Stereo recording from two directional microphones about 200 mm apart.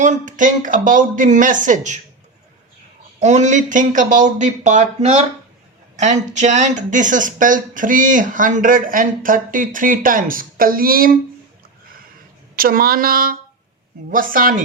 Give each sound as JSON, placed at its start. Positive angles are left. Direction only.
{"t": 0.0, "sound": "speech", "side_deg": -40}
{"t": 3.2, "sound": "speech", "side_deg": -35}
{"t": 12.5, "sound": "a woman's voice", "side_deg": -45}